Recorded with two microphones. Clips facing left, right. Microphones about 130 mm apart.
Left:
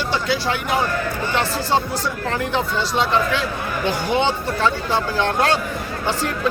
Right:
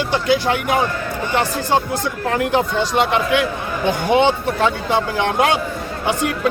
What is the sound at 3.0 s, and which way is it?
Speech, 60° right (ahead or behind).